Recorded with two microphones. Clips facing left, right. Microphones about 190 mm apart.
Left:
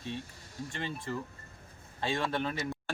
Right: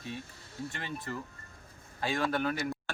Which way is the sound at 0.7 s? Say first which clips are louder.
Left 3 dB; 30° left (ahead or behind).